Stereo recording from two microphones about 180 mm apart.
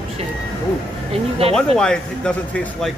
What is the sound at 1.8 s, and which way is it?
Speech, 5° left (ahead or behind).